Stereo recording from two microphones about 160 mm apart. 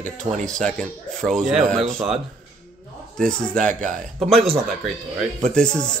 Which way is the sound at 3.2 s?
5° left (ahead or behind).